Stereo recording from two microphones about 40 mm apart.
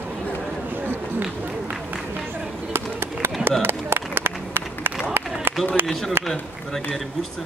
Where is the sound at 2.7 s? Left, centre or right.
Right.